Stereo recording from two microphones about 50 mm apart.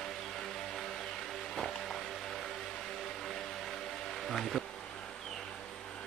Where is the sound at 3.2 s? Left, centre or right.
Centre.